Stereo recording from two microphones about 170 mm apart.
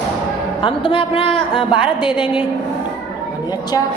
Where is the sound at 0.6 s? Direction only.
30° left (ahead or behind).